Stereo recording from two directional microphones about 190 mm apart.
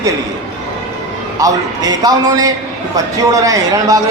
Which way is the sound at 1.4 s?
20° right (ahead or behind).